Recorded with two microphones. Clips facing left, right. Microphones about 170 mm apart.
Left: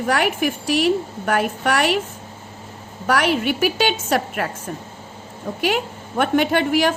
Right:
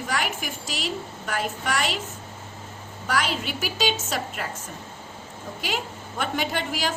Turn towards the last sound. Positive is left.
turn(degrees=60)  # may be behind; listen again after turning